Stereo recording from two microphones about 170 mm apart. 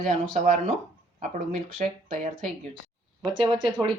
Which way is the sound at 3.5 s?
5° left (ahead or behind).